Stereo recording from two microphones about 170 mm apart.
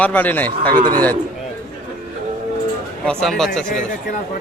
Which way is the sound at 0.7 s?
25° right (ahead or behind).